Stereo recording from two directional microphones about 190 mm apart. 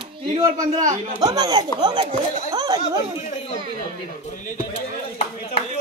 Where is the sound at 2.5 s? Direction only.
20° right (ahead or behind).